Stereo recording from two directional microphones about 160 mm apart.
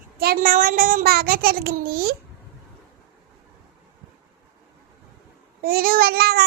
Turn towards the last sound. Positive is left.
turn(degrees=-75)  # may be behind; listen again after turning